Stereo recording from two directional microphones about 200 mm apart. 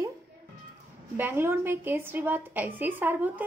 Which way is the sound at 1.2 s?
10° right (ahead or behind).